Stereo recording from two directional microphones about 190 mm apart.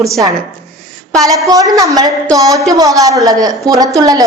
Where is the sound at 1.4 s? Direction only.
20° right (ahead or behind).